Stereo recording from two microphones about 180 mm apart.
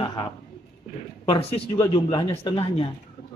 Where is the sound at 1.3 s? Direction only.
35° left (ahead or behind).